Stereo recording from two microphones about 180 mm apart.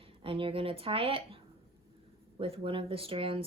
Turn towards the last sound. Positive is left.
turn(degrees=-30)  # may be behind; listen again after turning